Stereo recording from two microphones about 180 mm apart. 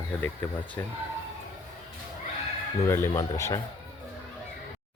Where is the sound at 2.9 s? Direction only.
15° left (ahead or behind).